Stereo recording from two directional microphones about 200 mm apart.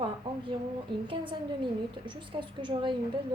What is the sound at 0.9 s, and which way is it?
A woman's voice, 25° right (ahead or behind).